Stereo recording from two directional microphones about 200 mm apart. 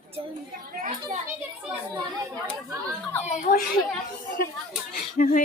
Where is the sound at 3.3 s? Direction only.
40° left (ahead or behind).